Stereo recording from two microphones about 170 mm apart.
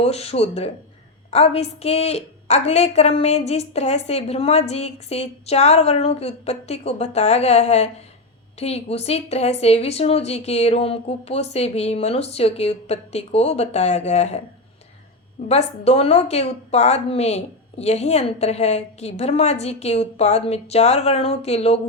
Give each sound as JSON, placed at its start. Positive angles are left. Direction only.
{"t": 0.0, "sound": "a woman's voice", "side_deg": 40}
{"t": 15.4, "sound": "a woman's voice", "side_deg": 35}